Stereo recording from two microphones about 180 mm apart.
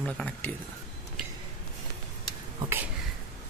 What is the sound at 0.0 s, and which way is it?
Speech, 5° left (ahead or behind).